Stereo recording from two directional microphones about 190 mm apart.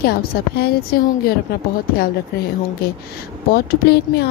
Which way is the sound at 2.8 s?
55° left (ahead or behind).